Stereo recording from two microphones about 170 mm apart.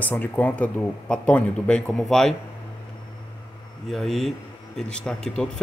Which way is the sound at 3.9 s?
Centre (ahead or behind).